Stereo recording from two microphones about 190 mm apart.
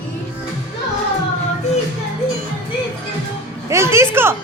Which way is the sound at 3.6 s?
15° right (ahead or behind).